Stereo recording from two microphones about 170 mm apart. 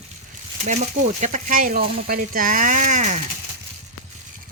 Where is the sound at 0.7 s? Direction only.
45° right (ahead or behind).